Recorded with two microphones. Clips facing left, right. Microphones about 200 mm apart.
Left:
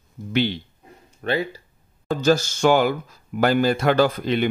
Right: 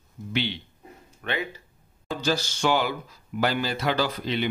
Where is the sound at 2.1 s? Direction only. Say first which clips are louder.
Left 8 dB; 45° left (ahead or behind).